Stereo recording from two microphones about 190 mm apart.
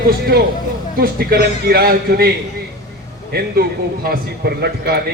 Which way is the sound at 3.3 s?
55° right (ahead or behind).